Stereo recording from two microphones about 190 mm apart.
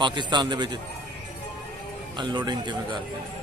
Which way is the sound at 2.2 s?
20° right (ahead or behind).